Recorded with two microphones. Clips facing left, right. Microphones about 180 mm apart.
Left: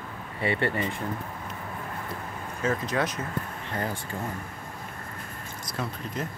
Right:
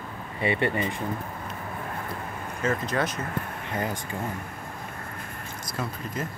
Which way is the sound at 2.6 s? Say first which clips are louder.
Even; centre (ahead or behind).